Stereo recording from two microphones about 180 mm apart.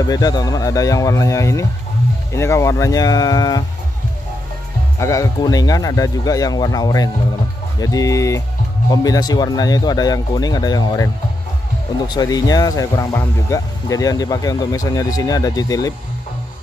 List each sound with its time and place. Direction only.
0.0 s speech: 20° left (ahead or behind)
4.9 s speech: 15° left (ahead or behind)
12.1 s speech: 20° left (ahead or behind)